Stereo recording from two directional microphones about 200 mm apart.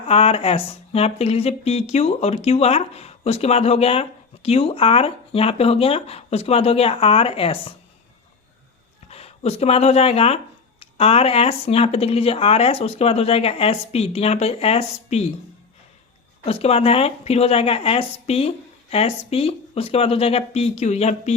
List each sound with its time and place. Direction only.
0.1 s speech: 30° left (ahead or behind)
9.0 s speech: 30° left (ahead or behind)
16.5 s speech: 30° left (ahead or behind)